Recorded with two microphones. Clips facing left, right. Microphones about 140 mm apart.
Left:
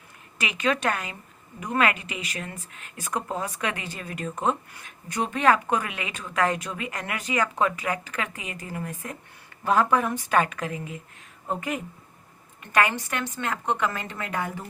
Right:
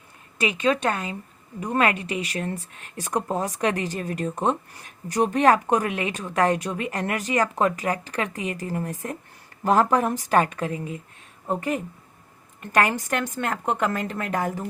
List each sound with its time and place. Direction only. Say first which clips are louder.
0.3 s a woman's voice: right 4 dB; 30° right (ahead or behind)
12.7 s a woman's voice: right 2 dB; 40° right (ahead or behind)